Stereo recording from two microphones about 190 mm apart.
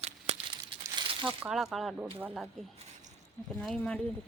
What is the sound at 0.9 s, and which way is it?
Coin, 25° right (ahead or behind).